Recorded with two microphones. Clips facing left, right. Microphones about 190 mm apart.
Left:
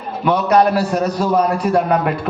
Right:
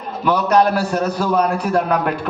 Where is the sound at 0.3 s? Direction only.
Centre (ahead or behind).